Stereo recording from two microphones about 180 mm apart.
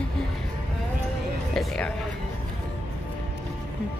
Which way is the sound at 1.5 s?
5° left (ahead or behind).